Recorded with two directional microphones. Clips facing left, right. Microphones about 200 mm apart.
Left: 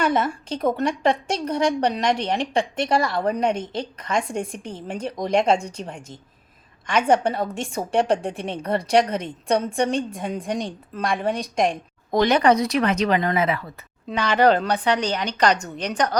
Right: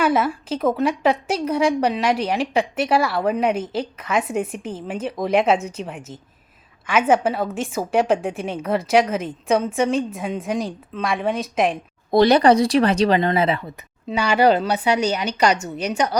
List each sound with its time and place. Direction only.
0.0 s a woman's voice: 5° right (ahead or behind)
12.1 s speech: 35° right (ahead or behind)
14.1 s a woman's voice: 10° right (ahead or behind)